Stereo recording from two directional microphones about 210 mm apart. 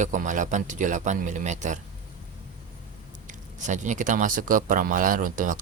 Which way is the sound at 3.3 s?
35° right (ahead or behind).